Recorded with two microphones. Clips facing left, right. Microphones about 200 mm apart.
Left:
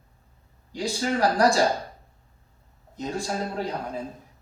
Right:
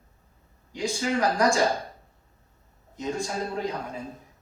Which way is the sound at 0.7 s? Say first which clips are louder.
Even; 35° left (ahead or behind).